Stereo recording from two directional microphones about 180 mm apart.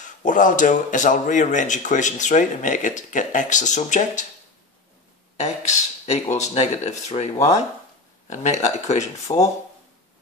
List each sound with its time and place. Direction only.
0.0 s speech: 45° left (ahead or behind)
5.4 s speech: 40° left (ahead or behind)
8.3 s speech: 40° left (ahead or behind)
9.3 s speech: 25° left (ahead or behind)